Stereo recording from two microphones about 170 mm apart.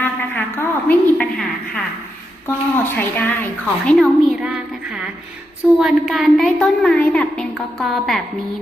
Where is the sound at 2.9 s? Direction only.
10° left (ahead or behind).